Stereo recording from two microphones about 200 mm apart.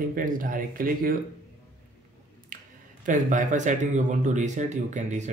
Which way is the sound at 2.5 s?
40° right (ahead or behind).